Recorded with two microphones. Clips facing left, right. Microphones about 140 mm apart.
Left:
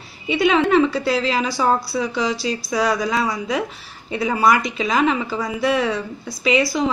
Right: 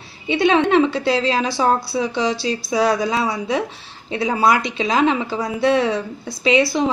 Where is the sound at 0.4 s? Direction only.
25° right (ahead or behind).